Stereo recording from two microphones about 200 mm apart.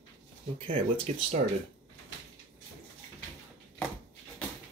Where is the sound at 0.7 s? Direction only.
30° right (ahead or behind).